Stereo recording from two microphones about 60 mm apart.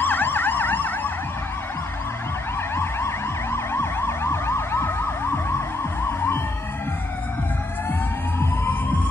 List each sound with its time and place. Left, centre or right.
0.0 s emergency vehicle: left
2.7 s emergency vehicle: left
8.4 s music: left